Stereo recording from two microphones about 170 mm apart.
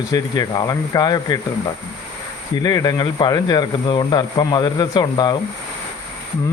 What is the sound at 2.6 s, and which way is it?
Speech, 25° left (ahead or behind).